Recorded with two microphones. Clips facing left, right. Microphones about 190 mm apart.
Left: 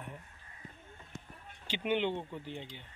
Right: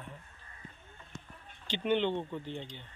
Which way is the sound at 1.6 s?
10° left (ahead or behind).